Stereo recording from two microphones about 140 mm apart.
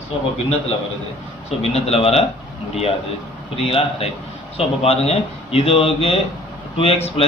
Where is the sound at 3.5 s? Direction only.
45° left (ahead or behind).